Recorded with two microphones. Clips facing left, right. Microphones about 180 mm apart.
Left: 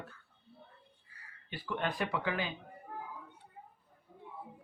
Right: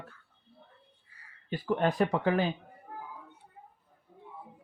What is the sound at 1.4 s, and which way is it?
Speech, 40° right (ahead or behind).